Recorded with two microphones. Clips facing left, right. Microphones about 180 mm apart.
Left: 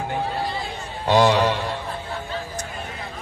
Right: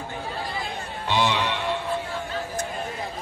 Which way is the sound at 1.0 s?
40° left (ahead or behind).